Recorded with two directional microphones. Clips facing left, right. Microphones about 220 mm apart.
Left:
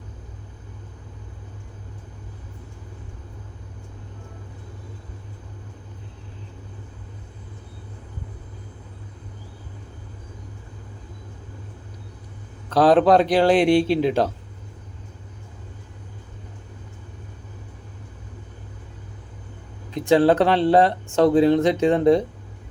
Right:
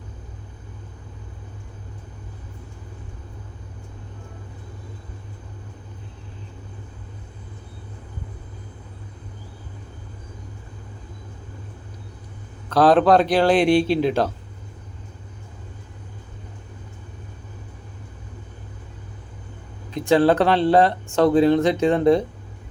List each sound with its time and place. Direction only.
12.6 s speech: 20° left (ahead or behind)
19.9 s speech: 20° left (ahead or behind)